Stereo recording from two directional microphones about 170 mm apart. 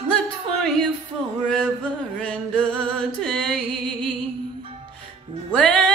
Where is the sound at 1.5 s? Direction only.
5° left (ahead or behind).